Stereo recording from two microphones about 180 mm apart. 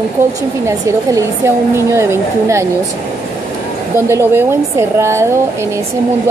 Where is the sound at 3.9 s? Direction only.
15° right (ahead or behind).